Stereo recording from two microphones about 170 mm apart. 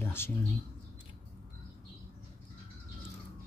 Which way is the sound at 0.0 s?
15° left (ahead or behind).